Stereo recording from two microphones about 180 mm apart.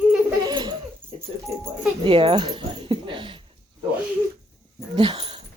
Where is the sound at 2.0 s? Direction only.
30° right (ahead or behind).